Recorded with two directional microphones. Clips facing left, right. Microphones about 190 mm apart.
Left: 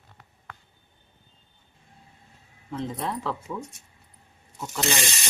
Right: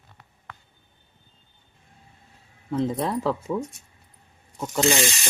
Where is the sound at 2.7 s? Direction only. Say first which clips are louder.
Right 6 dB; 35° right (ahead or behind).